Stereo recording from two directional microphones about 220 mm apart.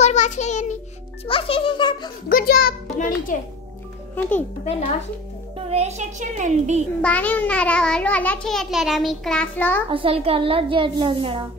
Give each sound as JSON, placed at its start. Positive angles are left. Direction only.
{"t": 0.0, "sound": "child singing", "side_deg": 30}
{"t": 1.2, "sound": "a child's voice", "side_deg": 25}
{"t": 2.2, "sound": "a child's voice", "side_deg": 40}
{"t": 4.1, "sound": "a child's voice", "side_deg": 10}
{"t": 5.7, "sound": "a child's voice", "side_deg": -30}
{"t": 7.0, "sound": "a child's voice", "side_deg": 5}
{"t": 9.8, "sound": "a child's voice", "side_deg": -25}